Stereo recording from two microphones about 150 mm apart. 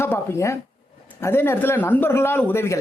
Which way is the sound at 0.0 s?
15° left (ahead or behind).